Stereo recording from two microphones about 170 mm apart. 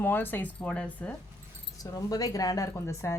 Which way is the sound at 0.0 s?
10° left (ahead or behind).